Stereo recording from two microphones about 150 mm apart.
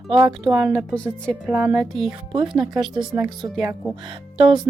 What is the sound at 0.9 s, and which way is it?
Speech, 5° left (ahead or behind).